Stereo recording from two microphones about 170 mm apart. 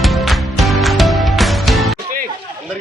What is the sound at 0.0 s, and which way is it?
Music, centre (ahead or behind).